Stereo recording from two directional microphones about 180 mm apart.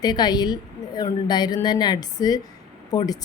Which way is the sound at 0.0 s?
25° left (ahead or behind).